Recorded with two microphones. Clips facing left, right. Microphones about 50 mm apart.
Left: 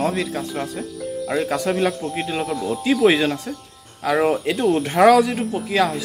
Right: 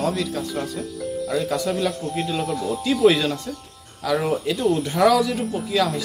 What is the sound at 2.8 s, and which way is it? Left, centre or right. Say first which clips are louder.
Speech: left 1 dB; left.